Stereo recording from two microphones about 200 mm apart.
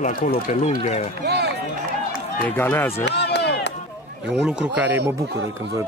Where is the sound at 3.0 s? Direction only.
60° left (ahead or behind).